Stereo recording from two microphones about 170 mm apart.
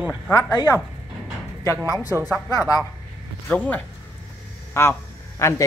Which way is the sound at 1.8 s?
15° right (ahead or behind).